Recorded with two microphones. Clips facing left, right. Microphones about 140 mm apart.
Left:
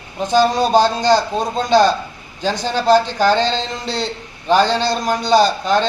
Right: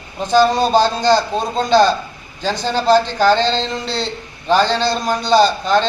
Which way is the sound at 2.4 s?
15° left (ahead or behind).